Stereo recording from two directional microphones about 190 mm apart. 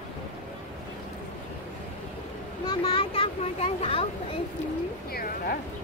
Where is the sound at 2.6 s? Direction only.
25° left (ahead or behind).